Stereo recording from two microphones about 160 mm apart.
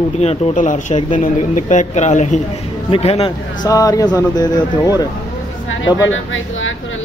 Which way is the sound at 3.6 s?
20° left (ahead or behind).